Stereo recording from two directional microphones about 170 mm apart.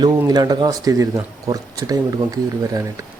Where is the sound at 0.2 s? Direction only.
20° right (ahead or behind).